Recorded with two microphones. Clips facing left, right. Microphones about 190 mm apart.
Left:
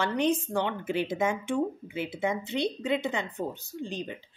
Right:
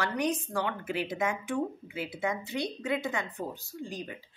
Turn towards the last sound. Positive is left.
turn(degrees=25)  # may be behind; listen again after turning